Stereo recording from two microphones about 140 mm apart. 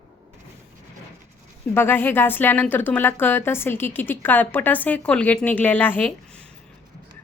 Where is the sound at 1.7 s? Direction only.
15° left (ahead or behind).